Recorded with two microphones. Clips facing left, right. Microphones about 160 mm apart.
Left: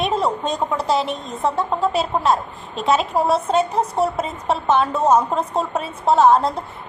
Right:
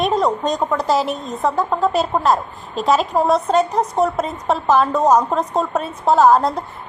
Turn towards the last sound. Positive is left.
turn(degrees=0)  # may be behind; listen again after turning